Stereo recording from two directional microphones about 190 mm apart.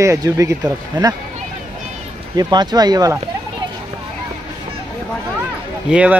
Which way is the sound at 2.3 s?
20° right (ahead or behind).